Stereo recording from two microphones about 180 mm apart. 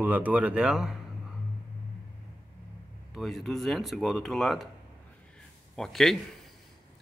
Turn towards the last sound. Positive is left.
turn(degrees=0)  # may be behind; listen again after turning